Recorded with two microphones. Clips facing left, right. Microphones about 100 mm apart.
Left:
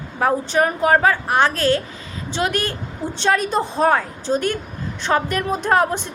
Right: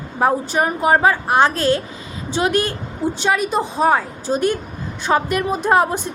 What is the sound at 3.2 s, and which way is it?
A woman's voice, 5° right (ahead or behind).